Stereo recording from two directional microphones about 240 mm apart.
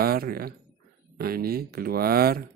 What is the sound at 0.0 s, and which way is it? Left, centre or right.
Speech, right.